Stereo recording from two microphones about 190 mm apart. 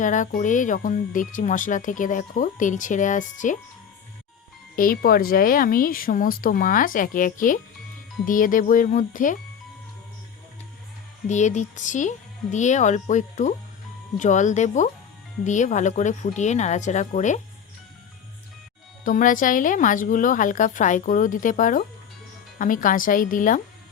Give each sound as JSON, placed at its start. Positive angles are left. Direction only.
{"t": 0.0, "sound": "speech", "side_deg": 40}
{"t": 4.8, "sound": "speech", "side_deg": 50}
{"t": 11.3, "sound": "speech", "side_deg": 40}
{"t": 19.0, "sound": "speech", "side_deg": 45}